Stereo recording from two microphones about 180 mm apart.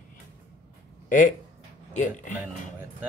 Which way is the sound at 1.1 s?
45° left (ahead or behind).